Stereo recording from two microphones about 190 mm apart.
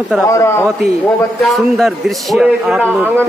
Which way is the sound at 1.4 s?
Centre (ahead or behind).